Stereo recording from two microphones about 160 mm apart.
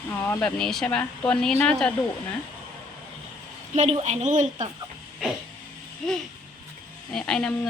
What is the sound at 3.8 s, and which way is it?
Speech, 40° right (ahead or behind).